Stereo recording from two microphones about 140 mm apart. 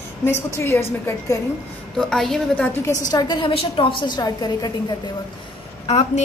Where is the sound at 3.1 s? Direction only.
30° left (ahead or behind).